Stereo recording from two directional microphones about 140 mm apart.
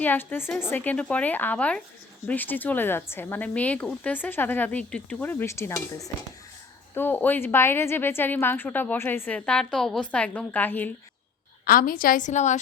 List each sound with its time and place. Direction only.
0.0 s a woman's voice: 15° left (ahead or behind)
11.6 s a woman's voice: 90° left; by 12.5 s 60° left (ahead or behind)